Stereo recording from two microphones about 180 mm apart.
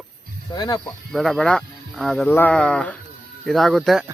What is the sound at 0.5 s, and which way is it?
Speech, 20° left (ahead or behind).